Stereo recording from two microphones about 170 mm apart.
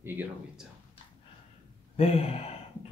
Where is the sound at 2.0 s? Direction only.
35° left (ahead or behind).